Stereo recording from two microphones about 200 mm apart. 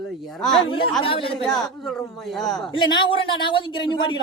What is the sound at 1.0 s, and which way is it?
Speech, 25° left (ahead or behind).